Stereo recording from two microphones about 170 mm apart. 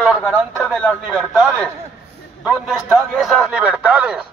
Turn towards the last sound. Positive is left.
turn(degrees=-5)  # may be behind; listen again after turning